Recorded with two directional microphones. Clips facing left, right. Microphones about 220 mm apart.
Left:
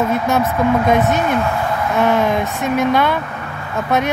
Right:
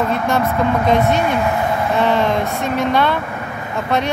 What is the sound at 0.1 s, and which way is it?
Speech, 5° left (ahead or behind).